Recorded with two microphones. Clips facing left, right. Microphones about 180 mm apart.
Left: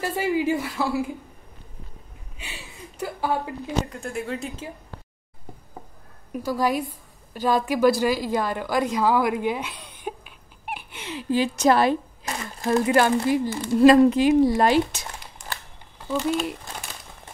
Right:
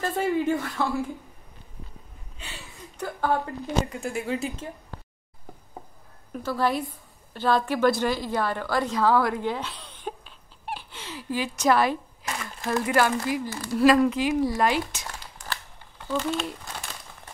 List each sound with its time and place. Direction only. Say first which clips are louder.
0.0 s speech: left 1 dB; 5° left (ahead or behind)
2.3 s a sound: left 2 dB; 15° left (ahead or behind)
3.6 s speech: right 1 dB; centre (ahead or behind)
6.3 s a woman's voice: left 2 dB; 10° left (ahead or behind); by 15.1 s 30° left (ahead or behind)
16.1 s speech: left 3 dB; 10° left (ahead or behind)